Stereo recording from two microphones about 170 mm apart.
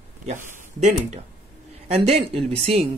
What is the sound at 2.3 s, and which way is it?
Speech, 35° right (ahead or behind).